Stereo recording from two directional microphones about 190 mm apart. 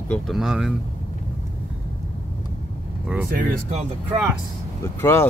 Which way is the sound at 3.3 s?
50° right (ahead or behind).